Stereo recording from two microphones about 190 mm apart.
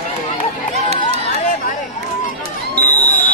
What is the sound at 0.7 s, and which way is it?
Run, 35° right (ahead or behind).